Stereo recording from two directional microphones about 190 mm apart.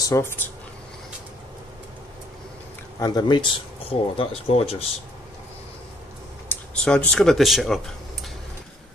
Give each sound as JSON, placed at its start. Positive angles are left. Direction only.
{"t": 0.0, "sound": "speech", "side_deg": 15}
{"t": 3.0, "sound": "speech", "side_deg": 20}
{"t": 6.5, "sound": "speech", "side_deg": 5}